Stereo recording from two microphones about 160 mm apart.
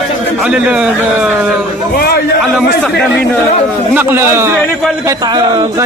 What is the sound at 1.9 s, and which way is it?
Speech, 80° left.